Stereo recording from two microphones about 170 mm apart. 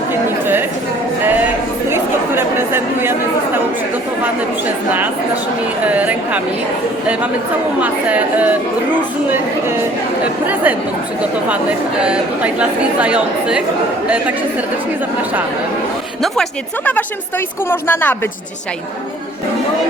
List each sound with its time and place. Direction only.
0.3 s chatter: 10° right (ahead or behind)
1.2 s music: 10° right (ahead or behind)
1.9 s chatter: 15° right (ahead or behind)
5.9 s speech: 10° right (ahead or behind)
7.8 s speech: 10° right (ahead or behind)
10.4 s speech: 10° right (ahead or behind)
12.0 s speech: 5° right (ahead or behind)
16.2 s a woman's voice: centre (ahead or behind)